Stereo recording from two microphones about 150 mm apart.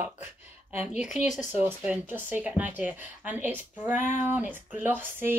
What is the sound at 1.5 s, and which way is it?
Speech, 10° right (ahead or behind).